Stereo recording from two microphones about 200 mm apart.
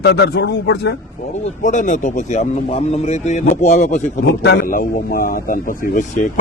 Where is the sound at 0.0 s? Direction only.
55° left (ahead or behind).